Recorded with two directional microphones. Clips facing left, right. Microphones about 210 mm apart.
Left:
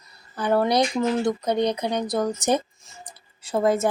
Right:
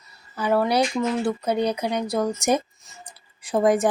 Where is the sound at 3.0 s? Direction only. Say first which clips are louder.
Right 5 dB; 15° right (ahead or behind).